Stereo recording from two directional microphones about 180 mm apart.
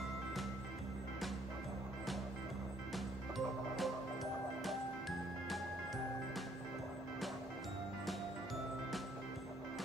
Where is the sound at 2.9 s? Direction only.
Centre (ahead or behind).